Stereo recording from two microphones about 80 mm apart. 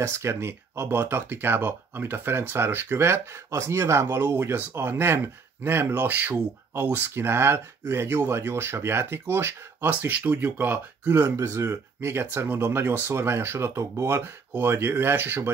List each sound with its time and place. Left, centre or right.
0.0 s speech: right
11.3 s speech: right